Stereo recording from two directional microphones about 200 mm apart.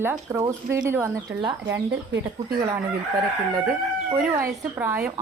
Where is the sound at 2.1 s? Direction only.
60° right (ahead or behind).